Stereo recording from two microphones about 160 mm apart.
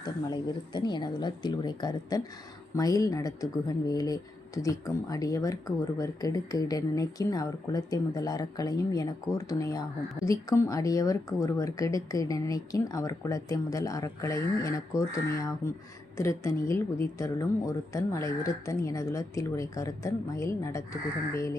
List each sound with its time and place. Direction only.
0.0 s speech: 25° left (ahead or behind)
16.1 s speech: 20° left (ahead or behind)